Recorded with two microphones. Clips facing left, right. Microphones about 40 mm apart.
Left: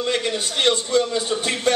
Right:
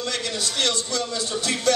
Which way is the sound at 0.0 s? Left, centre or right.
Left.